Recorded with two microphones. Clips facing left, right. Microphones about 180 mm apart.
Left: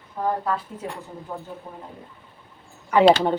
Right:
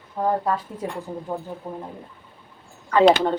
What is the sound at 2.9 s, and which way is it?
Speech, 10° left (ahead or behind).